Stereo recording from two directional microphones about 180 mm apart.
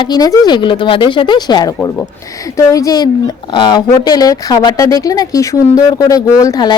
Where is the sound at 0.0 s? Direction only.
20° left (ahead or behind).